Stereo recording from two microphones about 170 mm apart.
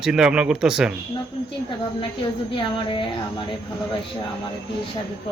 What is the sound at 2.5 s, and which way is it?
Speech, 30° left (ahead or behind).